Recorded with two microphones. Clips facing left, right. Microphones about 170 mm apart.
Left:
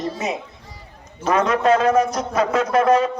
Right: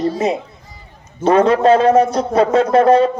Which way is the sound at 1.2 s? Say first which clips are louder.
Right 6 dB; 30° right (ahead or behind).